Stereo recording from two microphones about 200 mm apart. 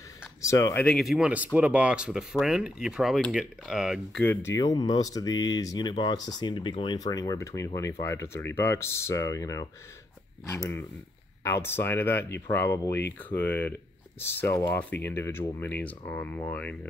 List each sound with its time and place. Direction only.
0.4 s speech: 15° left (ahead or behind)
0.8 s speech: centre (ahead or behind)
4.2 s speech: 10° left (ahead or behind)